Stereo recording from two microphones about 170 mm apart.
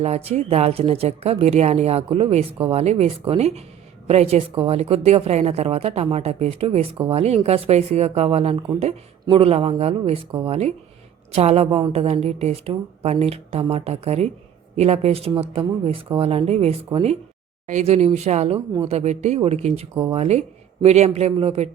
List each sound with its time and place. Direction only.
0.0 s a woman's voice: 40° right (ahead or behind)